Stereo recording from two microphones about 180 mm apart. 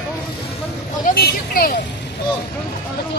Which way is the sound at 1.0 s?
55° left (ahead or behind).